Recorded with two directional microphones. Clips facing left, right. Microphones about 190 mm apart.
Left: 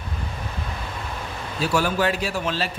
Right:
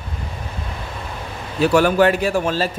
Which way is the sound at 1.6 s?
60° right (ahead or behind).